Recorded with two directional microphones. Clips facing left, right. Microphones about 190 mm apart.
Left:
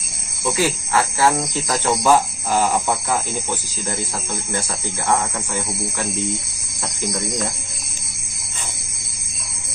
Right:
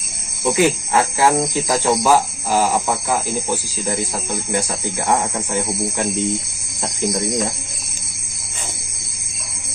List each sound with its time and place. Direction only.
0.4 s speech: 20° right (ahead or behind)
1.7 s speech: 5° right (ahead or behind)